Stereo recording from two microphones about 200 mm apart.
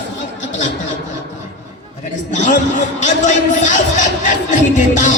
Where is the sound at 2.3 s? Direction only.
40° left (ahead or behind).